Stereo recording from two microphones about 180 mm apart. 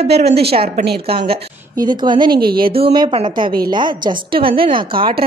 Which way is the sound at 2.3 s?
60° right (ahead or behind).